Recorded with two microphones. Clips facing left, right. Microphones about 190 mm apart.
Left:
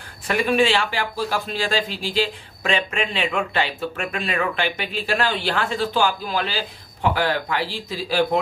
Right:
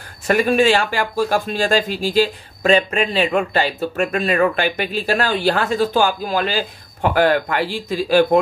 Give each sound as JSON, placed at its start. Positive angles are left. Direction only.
{"t": 0.3, "sound": "speech", "side_deg": -45}